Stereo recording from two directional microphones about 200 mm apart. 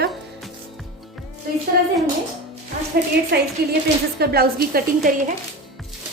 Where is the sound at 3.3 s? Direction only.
55° right (ahead or behind).